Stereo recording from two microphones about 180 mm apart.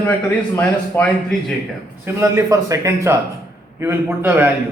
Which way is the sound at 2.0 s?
15° right (ahead or behind).